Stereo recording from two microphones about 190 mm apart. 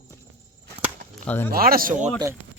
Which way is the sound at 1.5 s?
50° right (ahead or behind).